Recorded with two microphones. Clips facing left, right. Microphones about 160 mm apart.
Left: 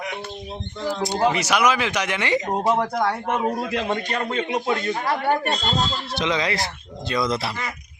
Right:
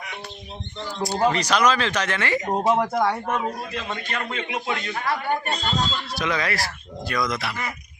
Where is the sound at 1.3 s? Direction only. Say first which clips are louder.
Even; 10° left (ahead or behind).